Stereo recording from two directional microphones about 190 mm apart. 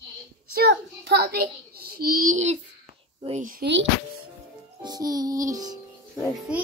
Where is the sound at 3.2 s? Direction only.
35° right (ahead or behind).